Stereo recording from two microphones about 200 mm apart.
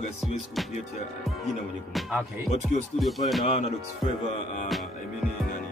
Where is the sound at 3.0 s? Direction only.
Centre (ahead or behind).